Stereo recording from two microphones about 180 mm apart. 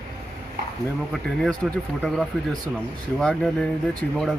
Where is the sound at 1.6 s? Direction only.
Centre (ahead or behind).